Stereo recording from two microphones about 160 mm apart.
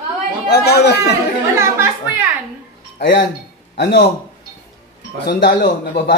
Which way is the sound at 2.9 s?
75° left (ahead or behind).